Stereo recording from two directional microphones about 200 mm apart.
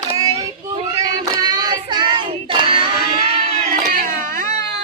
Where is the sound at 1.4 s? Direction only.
20° right (ahead or behind).